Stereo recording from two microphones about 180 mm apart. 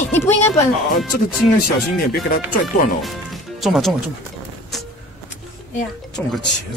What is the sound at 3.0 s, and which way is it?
Music, centre (ahead or behind).